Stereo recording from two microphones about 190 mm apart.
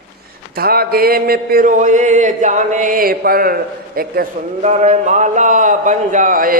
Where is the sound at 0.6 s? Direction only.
55° right (ahead or behind).